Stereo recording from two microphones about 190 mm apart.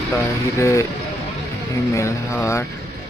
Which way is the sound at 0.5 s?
15° left (ahead or behind).